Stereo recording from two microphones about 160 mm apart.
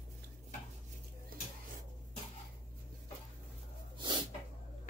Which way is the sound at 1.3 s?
65° right (ahead or behind).